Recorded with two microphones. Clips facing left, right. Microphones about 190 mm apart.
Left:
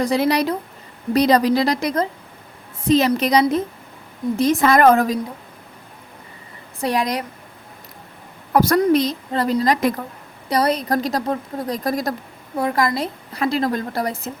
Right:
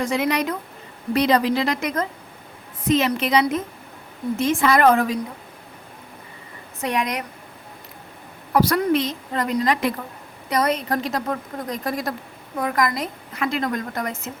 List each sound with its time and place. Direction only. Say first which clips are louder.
0.0 s a woman's voice: left 4 dB; 35° left (ahead or behind)
6.8 s a woman's voice: left 3 dB; 35° left (ahead or behind)
8.5 s a woman's voice: left 3 dB; 45° left (ahead or behind)